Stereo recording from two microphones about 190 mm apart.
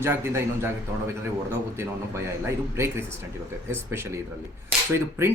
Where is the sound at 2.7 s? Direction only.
15° right (ahead or behind).